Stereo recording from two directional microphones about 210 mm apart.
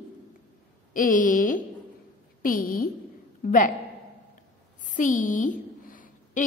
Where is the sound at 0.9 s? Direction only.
40° left (ahead or behind).